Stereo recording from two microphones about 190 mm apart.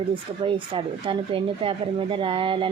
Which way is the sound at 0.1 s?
25° right (ahead or behind).